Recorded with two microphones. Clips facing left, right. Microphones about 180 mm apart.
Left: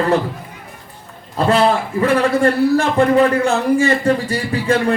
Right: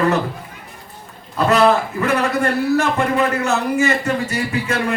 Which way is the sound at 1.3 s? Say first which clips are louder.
Even; 30° left (ahead or behind).